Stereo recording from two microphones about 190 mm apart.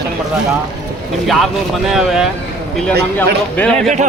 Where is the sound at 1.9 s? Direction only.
5° right (ahead or behind).